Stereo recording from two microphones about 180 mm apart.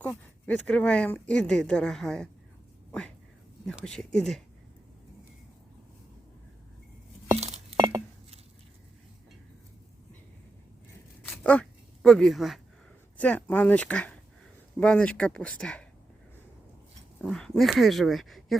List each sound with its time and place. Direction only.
0.0 s speech: 10° left (ahead or behind)
3.7 s speech: 5° left (ahead or behind)
7.3 s glass: 40° right (ahead or behind)
11.3 s a sound: 5° left (ahead or behind)
13.1 s speech: 10° left (ahead or behind)
17.2 s speech: 5° left (ahead or behind)